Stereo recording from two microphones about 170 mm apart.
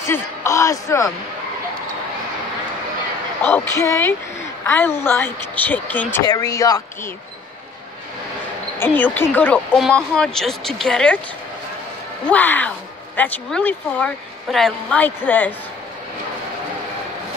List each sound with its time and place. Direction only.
0.0 s speech: 15° left (ahead or behind)
3.7 s speech: 15° left (ahead or behind)
8.7 s speech: 10° left (ahead or behind)
12.3 s speech: 10° left (ahead or behind)